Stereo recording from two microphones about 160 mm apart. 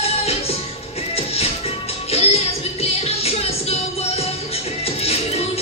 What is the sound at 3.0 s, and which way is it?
Music, 40° left (ahead or behind).